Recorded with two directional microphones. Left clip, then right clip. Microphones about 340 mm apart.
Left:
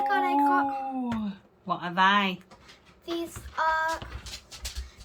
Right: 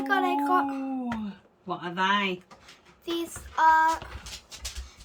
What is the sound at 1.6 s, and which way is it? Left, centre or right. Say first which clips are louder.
Speech: left 4 dB; centre.